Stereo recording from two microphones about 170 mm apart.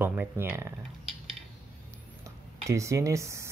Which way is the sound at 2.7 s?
15° right (ahead or behind).